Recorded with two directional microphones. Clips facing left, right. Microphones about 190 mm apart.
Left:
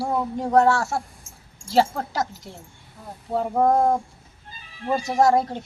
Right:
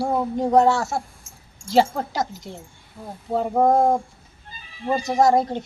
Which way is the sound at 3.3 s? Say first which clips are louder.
Right 2 dB; centre (ahead or behind).